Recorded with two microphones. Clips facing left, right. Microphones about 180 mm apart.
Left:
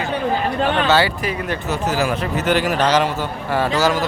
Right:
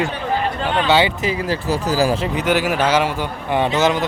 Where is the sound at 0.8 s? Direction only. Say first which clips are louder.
Right 1 dB; 15° right (ahead or behind).